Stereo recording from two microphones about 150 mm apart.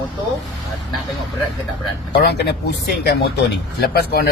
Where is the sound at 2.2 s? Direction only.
90° left.